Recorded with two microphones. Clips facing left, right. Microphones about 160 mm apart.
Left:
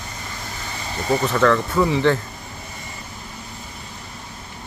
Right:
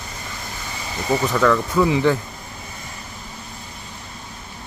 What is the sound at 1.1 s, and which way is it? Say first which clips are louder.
Speech: even; 5° right (ahead or behind).